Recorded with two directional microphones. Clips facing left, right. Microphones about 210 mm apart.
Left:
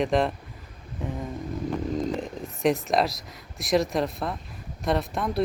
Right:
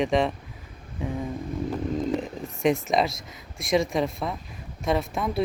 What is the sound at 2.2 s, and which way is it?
Speech, centre (ahead or behind).